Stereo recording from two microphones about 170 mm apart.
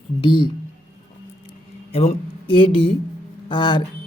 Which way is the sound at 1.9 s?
35° left (ahead or behind).